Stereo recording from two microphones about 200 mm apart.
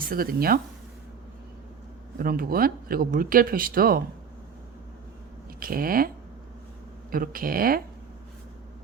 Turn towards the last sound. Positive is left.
turn(degrees=-45)  # may be behind; listen again after turning